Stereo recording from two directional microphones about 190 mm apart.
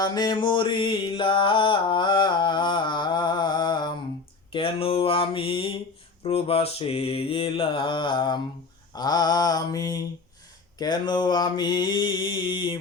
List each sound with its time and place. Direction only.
0.0 s mantra: 20° left (ahead or behind)